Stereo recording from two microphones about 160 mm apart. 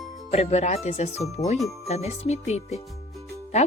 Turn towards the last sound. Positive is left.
turn(degrees=45)  # may be behind; listen again after turning